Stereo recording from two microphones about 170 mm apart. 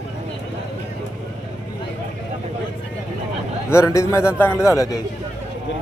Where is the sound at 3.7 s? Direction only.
15° left (ahead or behind).